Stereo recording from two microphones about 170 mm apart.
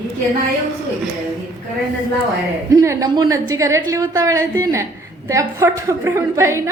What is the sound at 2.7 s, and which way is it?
A woman's voice, 20° right (ahead or behind).